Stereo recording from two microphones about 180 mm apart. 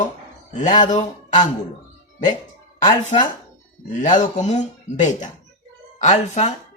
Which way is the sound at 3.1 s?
40° left (ahead or behind).